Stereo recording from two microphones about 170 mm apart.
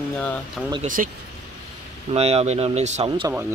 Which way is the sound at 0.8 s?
50° right (ahead or behind).